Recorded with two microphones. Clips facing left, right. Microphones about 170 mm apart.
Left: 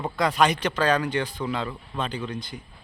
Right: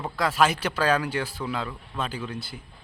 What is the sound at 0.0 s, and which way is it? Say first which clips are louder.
Speech: left 1 dB; centre (ahead or behind).